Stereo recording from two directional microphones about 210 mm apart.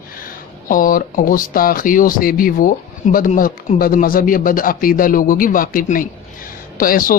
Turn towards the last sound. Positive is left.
turn(degrees=40)  # may be behind; listen again after turning